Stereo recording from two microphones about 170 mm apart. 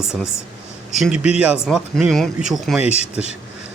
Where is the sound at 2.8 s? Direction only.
40° left (ahead or behind).